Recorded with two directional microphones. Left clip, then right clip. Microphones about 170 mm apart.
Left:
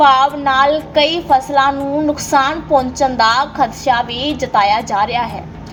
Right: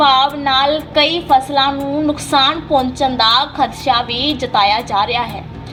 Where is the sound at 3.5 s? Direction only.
15° left (ahead or behind).